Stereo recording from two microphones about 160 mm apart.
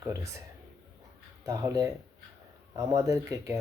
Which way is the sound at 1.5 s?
20° right (ahead or behind).